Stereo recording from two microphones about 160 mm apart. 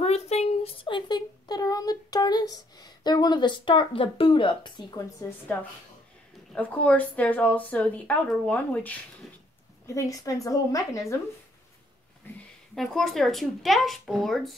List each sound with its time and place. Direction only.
0.0 s speech: 40° left (ahead or behind)
6.5 s a woman's voice: 10° left (ahead or behind)
9.8 s a woman's voice: 20° left (ahead or behind)
12.7 s speech: centre (ahead or behind)